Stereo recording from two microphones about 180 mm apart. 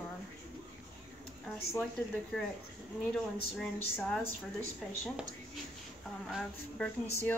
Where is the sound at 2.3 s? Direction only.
Centre (ahead or behind).